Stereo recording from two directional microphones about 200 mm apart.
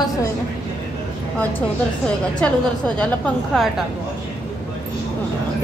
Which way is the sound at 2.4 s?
5° left (ahead or behind).